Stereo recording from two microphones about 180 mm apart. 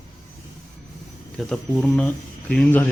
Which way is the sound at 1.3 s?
5° left (ahead or behind).